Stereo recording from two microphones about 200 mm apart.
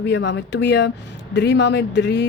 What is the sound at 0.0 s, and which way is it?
Speech, 60° left (ahead or behind).